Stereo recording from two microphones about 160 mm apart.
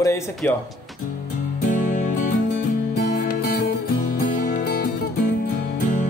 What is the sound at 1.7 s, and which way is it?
Music, 50° left (ahead or behind).